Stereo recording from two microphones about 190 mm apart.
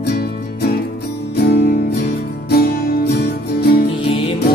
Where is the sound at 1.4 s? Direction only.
55° left (ahead or behind).